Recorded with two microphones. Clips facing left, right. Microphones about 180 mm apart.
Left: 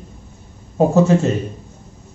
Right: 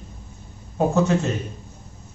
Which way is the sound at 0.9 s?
30° left (ahead or behind).